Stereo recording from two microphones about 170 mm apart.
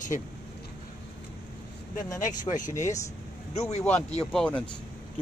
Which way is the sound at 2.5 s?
50° left (ahead or behind).